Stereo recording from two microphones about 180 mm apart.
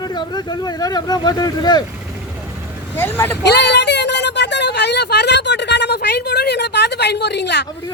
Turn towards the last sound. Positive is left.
turn(degrees=70)  # may be behind; listen again after turning